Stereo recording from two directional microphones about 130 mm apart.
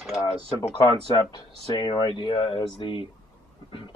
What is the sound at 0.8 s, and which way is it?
Speech, 35° left (ahead or behind).